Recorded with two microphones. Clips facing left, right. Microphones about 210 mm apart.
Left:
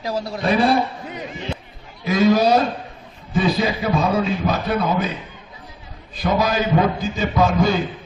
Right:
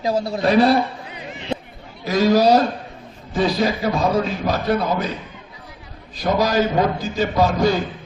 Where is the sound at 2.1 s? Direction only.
55° left (ahead or behind).